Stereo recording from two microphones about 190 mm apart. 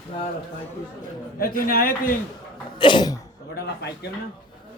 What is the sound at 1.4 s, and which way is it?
Speech, 50° left (ahead or behind).